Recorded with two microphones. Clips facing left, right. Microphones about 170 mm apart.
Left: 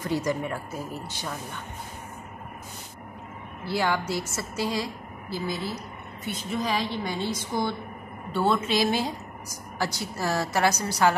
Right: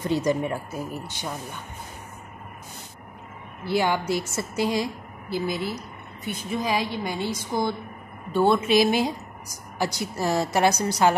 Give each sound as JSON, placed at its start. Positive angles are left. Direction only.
{"t": 0.0, "sound": "a woman's voice", "side_deg": -20}
{"t": 3.6, "sound": "a woman's voice", "side_deg": -15}